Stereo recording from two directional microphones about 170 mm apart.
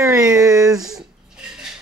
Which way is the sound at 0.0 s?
20° right (ahead or behind).